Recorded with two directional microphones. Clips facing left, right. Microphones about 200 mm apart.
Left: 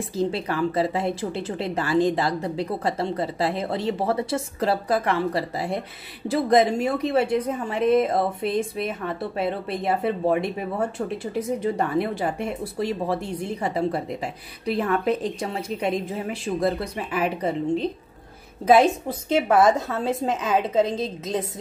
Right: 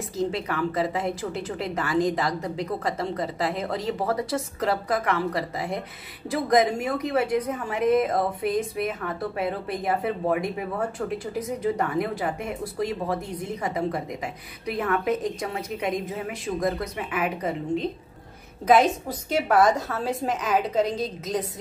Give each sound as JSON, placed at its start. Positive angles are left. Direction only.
{"t": 0.1, "sound": "a woman's voice", "side_deg": 30}